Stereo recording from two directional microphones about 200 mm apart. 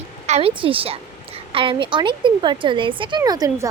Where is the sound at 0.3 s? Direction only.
30° right (ahead or behind).